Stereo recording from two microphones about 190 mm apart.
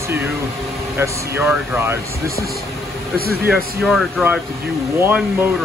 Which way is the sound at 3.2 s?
55° right (ahead or behind).